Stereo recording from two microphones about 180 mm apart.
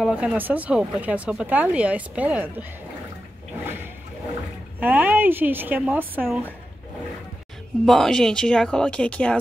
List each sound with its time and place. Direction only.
0.0 s speech: 5° right (ahead or behind)
4.7 s speech: 10° right (ahead or behind)
7.8 s speech: centre (ahead or behind)